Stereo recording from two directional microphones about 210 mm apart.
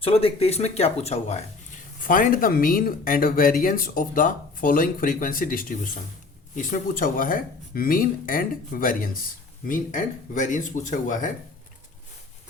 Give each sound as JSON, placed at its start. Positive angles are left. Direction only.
{"t": 0.0, "sound": "speech", "side_deg": 25}